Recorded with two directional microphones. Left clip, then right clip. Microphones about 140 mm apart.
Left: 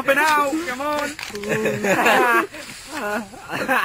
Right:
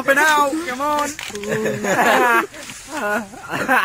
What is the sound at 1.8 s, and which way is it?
Speech, 55° left (ahead or behind).